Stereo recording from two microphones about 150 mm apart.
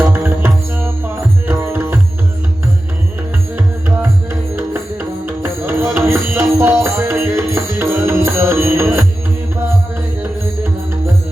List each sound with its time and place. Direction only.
0.0 s music: 15° right (ahead or behind)
3.8 s music: 15° right (ahead or behind)